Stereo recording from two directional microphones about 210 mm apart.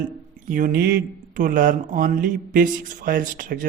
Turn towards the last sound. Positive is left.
turn(degrees=-40)  # may be behind; listen again after turning